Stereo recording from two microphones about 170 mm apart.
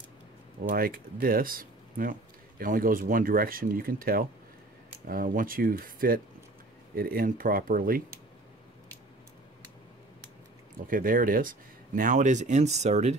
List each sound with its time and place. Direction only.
0.7 s speech: 60° right (ahead or behind)
10.9 s speech: 55° right (ahead or behind)